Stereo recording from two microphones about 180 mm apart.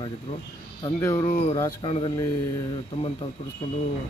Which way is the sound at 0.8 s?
20° left (ahead or behind).